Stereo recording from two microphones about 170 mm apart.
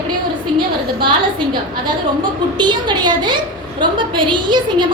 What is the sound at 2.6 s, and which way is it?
A woman's voice, 25° right (ahead or behind).